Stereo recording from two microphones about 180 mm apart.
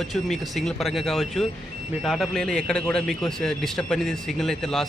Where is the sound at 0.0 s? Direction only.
Centre (ahead or behind).